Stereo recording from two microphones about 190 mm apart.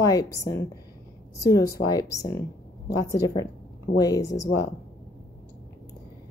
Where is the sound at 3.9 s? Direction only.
20° left (ahead or behind).